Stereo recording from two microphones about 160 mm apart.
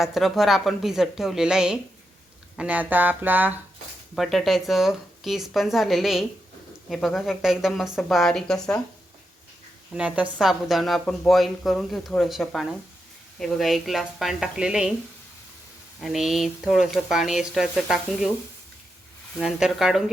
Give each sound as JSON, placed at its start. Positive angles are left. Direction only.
{"t": 0.0, "sound": "speech", "side_deg": 0}
{"t": 2.6, "sound": "a sound", "side_deg": -10}
{"t": 4.1, "sound": "speech", "side_deg": 0}
{"t": 9.9, "sound": "a sound", "side_deg": -5}
{"t": 10.3, "sound": "speech", "side_deg": 0}
{"t": 16.0, "sound": "speech", "side_deg": 0}
{"t": 19.4, "sound": "speech", "side_deg": -5}